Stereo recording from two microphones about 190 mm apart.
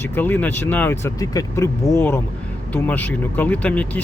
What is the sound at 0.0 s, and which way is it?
Speech, 10° left (ahead or behind).